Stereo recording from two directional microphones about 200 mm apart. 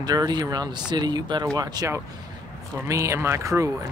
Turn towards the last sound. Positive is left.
turn(degrees=-15)  # may be behind; listen again after turning